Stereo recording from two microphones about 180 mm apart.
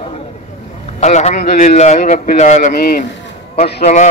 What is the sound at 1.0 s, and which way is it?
A man's voice, 40° left (ahead or behind).